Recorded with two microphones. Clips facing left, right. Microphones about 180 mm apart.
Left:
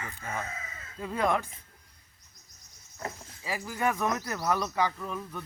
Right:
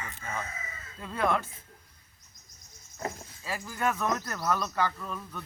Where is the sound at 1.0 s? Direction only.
15° left (ahead or behind).